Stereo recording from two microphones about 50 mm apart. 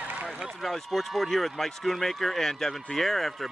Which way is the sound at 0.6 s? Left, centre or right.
Centre.